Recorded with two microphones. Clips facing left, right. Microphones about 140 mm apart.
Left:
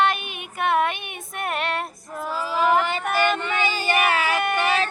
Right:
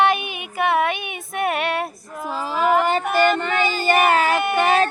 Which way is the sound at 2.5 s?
45° right (ahead or behind).